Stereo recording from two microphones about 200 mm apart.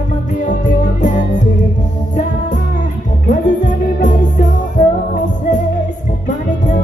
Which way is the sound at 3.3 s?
40° left (ahead or behind).